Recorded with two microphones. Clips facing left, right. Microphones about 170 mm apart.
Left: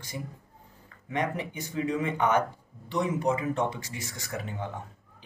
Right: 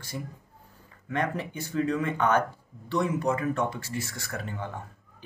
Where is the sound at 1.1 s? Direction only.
15° left (ahead or behind).